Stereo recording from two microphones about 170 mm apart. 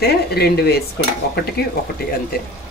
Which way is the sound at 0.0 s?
70° left (ahead or behind).